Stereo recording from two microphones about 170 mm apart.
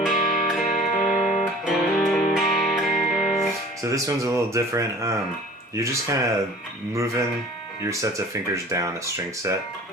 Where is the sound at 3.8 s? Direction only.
20° right (ahead or behind).